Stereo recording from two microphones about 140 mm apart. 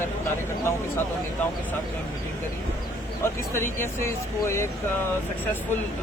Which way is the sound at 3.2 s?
20° left (ahead or behind).